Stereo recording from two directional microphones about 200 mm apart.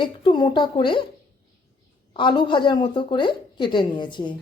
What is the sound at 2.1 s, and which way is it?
A woman's voice, 25° left (ahead or behind).